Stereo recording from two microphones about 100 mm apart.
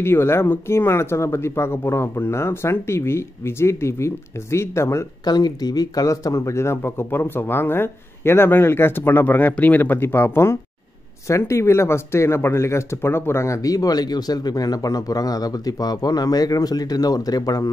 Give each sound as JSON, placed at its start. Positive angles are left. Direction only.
{"t": 0.0, "sound": "speech", "side_deg": 25}
{"t": 5.2, "sound": "speech", "side_deg": 40}